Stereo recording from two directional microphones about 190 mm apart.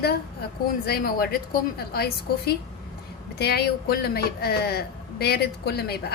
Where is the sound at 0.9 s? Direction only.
50° left (ahead or behind).